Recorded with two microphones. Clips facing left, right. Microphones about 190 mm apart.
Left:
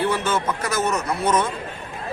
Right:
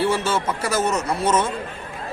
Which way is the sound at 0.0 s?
10° right (ahead or behind).